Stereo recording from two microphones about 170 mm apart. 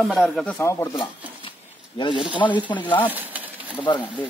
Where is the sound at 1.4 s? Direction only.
30° left (ahead or behind).